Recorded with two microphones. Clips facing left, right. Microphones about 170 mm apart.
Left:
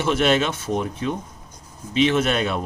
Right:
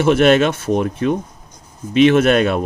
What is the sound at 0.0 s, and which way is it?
Speech, 55° right (ahead or behind).